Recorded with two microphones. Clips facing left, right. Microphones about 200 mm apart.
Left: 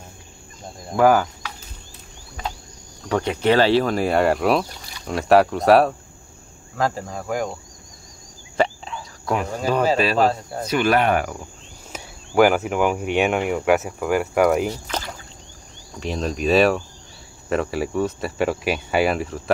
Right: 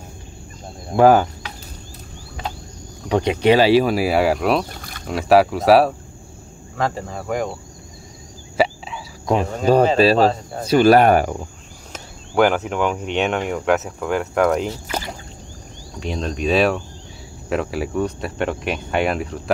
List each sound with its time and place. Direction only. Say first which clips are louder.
0.9 s speech: right 3 dB; 25° right (ahead or behind)
3.1 s speech: right 3 dB; 15° right (ahead or behind); by 7.5 s centre (ahead or behind)
8.5 s a sound: right 2 dB; 5° right (ahead or behind)
9.2 s cricket: right 4 dB; 20° right (ahead or behind)
9.9 s speech: right 4 dB; 30° right (ahead or behind)
11.9 s speech: left 1 dB; 5° left (ahead or behind)
14.9 s a sound: right 2 dB; 10° right (ahead or behind)
16.0 s speech: even; 5° left (ahead or behind)